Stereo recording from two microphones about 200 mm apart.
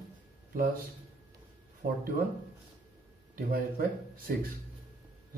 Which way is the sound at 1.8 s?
45° right (ahead or behind).